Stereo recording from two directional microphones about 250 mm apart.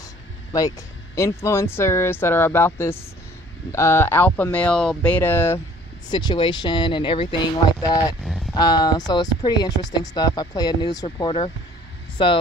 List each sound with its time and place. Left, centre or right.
0.5 s speech: centre
8.2 s a sound: centre
8.5 s speech: centre